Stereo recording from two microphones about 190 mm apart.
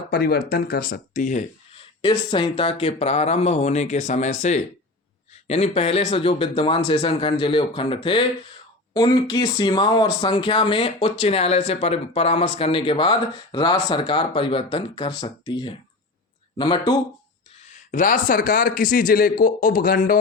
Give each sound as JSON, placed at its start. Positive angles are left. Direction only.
{"t": 0.1, "sound": "speech", "side_deg": 55}
{"t": 1.7, "sound": "speech", "side_deg": 25}
{"t": 17.9, "sound": "speech", "side_deg": 45}